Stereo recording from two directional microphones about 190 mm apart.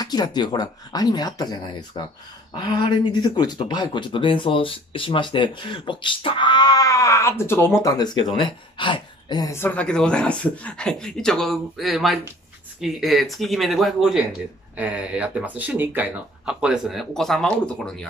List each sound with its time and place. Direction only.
0.0 s speech: 20° left (ahead or behind); by 18.0 s 5° left (ahead or behind)